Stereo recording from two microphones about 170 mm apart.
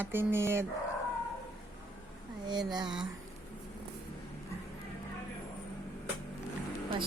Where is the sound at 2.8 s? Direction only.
5° right (ahead or behind).